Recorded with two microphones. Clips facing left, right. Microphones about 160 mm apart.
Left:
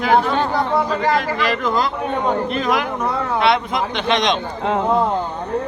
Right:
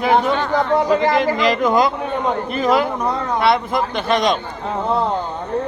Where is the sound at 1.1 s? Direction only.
15° right (ahead or behind).